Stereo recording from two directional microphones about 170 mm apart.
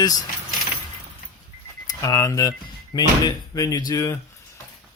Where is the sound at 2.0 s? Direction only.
20° left (ahead or behind).